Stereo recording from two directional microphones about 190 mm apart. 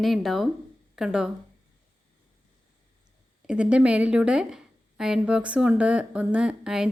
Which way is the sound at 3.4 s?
5° right (ahead or behind).